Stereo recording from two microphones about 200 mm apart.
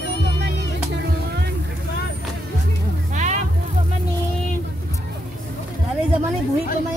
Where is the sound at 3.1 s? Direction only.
35° right (ahead or behind).